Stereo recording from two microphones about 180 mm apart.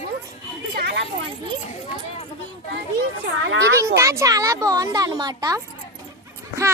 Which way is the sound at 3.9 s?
15° right (ahead or behind).